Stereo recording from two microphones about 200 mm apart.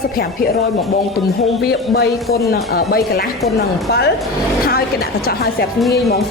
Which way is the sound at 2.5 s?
50° left (ahead or behind).